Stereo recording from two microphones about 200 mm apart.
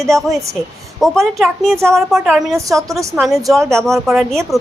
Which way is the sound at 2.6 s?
15° right (ahead or behind).